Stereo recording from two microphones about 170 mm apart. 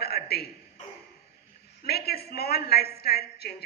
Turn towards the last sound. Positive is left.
turn(degrees=70)  # may be behind; listen again after turning